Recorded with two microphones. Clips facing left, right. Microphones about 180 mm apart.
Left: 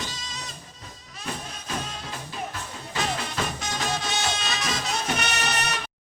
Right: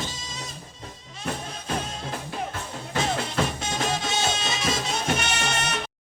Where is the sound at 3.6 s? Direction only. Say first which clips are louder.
Right 2 dB; 25° right (ahead or behind).